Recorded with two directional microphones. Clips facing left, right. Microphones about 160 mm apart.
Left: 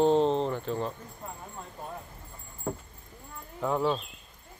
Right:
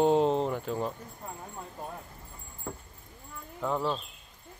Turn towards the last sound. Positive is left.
turn(degrees=5)  # may be behind; listen again after turning